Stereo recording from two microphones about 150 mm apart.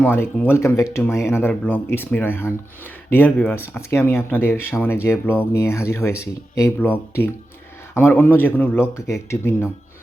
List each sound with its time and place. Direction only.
0.0 s speech: 10° left (ahead or behind)